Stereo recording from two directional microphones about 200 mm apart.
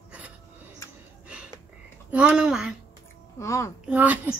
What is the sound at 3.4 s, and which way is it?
Speech, 15° left (ahead or behind).